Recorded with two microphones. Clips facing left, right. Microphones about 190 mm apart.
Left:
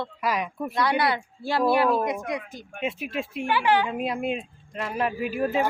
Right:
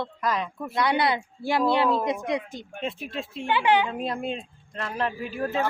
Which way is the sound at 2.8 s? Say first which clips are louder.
Left 3 dB; 10° left (ahead or behind).